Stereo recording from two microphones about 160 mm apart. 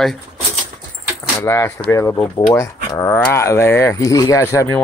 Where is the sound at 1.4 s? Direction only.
15° left (ahead or behind).